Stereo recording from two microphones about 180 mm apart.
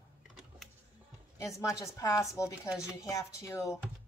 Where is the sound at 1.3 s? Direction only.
15° left (ahead or behind).